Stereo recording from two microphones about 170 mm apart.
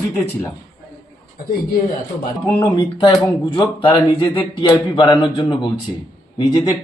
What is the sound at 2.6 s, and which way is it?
A man's voice, 30° left (ahead or behind).